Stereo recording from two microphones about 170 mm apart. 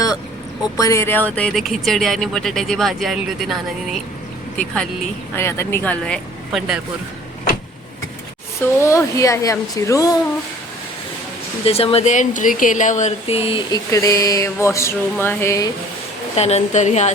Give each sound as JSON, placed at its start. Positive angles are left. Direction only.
{"t": 0.6, "sound": "speech", "side_deg": 20}
{"t": 5.3, "sound": "speech", "side_deg": 15}
{"t": 8.6, "sound": "a sound", "side_deg": 15}
{"t": 11.6, "sound": "speech", "side_deg": 35}
{"t": 13.7, "sound": "a sound", "side_deg": 20}
{"t": 16.3, "sound": "a woman's voice", "side_deg": 40}